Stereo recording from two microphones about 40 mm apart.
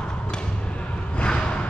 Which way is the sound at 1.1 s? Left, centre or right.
Left.